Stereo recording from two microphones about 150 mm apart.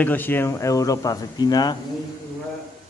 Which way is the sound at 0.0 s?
10° left (ahead or behind).